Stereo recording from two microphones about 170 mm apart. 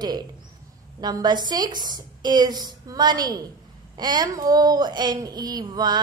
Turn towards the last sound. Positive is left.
turn(degrees=-25)  # may be behind; listen again after turning